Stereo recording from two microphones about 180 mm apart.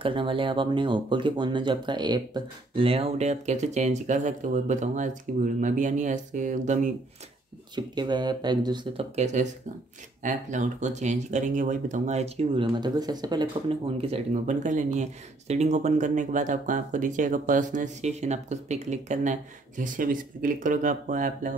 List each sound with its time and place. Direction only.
0.0 s speech: 30° right (ahead or behind)
7.7 s speech: 25° right (ahead or behind)
9.1 s speech: 40° right (ahead or behind)